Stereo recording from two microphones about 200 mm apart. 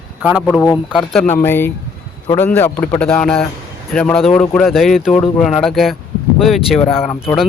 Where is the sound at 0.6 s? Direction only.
20° left (ahead or behind).